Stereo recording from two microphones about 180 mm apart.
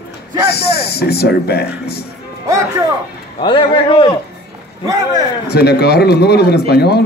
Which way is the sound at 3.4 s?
25° left (ahead or behind).